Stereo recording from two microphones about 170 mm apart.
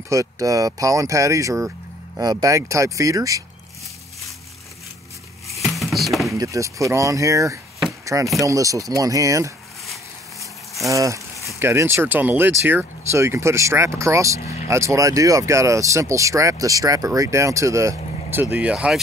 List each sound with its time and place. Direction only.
0.1 s speech: 20° right (ahead or behind)
5.6 s a sound: centre (ahead or behind)
6.3 s speech: 20° right (ahead or behind)
8.0 s a sound: 20° right (ahead or behind)
8.4 s speech: 20° right (ahead or behind)
10.9 s speech: 20° right (ahead or behind)